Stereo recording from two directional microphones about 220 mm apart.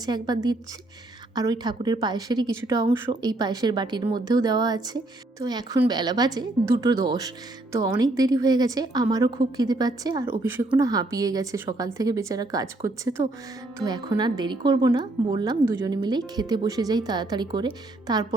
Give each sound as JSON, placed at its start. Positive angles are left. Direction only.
{"t": 0.0, "sound": "a woman's voice", "side_deg": -20}
{"t": 1.4, "sound": "a woman's voice", "side_deg": -20}